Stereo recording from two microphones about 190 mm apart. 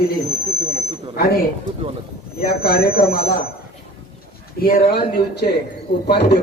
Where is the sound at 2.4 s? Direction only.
50° left (ahead or behind).